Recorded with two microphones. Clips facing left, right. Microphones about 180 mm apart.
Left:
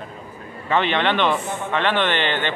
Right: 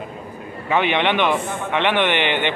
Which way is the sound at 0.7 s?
15° right (ahead or behind).